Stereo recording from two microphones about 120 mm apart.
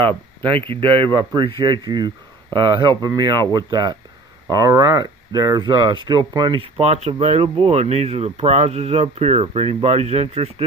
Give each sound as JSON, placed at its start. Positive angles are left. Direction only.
{"t": 0.0, "sound": "speech", "side_deg": -45}